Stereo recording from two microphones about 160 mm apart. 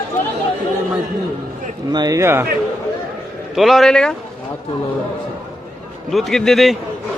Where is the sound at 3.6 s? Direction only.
Centre (ahead or behind).